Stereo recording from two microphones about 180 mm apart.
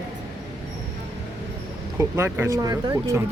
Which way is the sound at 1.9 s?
15° right (ahead or behind).